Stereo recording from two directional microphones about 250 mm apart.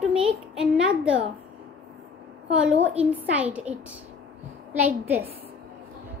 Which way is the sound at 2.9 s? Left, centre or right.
Centre.